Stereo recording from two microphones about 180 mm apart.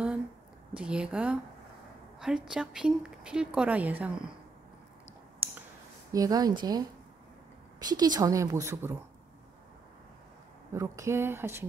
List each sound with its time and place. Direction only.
0.7 s a woman's voice: 5° right (ahead or behind)
6.1 s a woman's voice: 20° right (ahead or behind)
7.8 s a woman's voice: 20° right (ahead or behind)
10.7 s speech: 15° right (ahead or behind)